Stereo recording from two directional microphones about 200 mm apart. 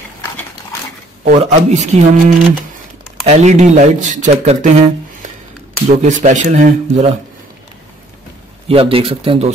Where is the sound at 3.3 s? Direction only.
35° right (ahead or behind).